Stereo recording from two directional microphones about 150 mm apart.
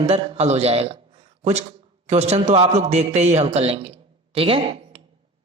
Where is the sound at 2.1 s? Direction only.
45° right (ahead or behind).